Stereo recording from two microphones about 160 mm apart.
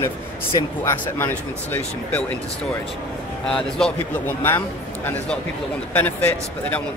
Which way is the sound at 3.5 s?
5° left (ahead or behind).